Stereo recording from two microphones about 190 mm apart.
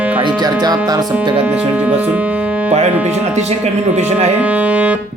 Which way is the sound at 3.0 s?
35° right (ahead or behind).